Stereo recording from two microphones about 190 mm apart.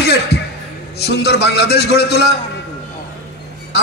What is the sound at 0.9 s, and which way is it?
A man's voice, 60° left (ahead or behind).